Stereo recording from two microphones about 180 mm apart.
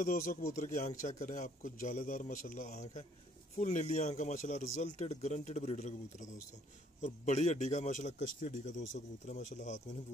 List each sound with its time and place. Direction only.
0.0 s a man's voice: 45° left (ahead or behind)